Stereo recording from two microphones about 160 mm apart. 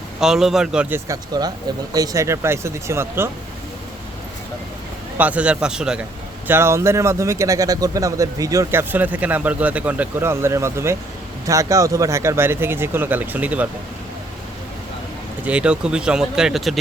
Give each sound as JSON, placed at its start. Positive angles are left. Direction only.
{"t": 0.2, "sound": "speech", "side_deg": -5}
{"t": 5.1, "sound": "speech", "side_deg": -10}
{"t": 6.5, "sound": "speech", "side_deg": -15}
{"t": 15.4, "sound": "speech", "side_deg": -5}